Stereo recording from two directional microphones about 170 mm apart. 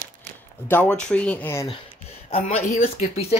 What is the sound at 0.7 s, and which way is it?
Speech, 10° left (ahead or behind).